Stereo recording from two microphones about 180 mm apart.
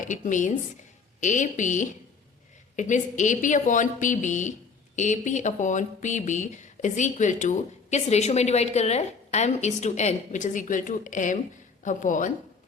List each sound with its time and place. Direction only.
0.1 s a woman's voice: 45° left (ahead or behind)